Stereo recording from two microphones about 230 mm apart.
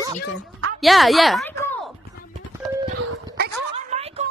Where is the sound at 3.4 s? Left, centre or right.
Right.